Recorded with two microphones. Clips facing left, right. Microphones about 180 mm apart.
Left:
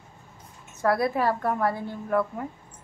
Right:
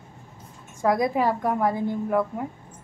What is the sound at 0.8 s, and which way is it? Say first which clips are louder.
A woman's voice: right 2 dB; 15° right (ahead or behind).